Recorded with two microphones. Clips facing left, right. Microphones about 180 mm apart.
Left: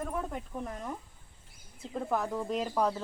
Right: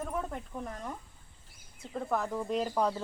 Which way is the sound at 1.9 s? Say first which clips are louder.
Left 1 dB; 5° left (ahead or behind).